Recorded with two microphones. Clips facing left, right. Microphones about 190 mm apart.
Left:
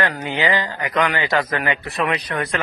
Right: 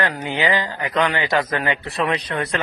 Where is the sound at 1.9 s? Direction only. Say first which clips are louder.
Even; 35° right (ahead or behind).